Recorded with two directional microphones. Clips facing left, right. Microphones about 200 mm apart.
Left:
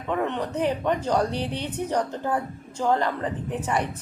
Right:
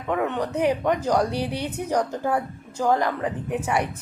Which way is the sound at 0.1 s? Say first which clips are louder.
Right 2 dB; 10° right (ahead or behind).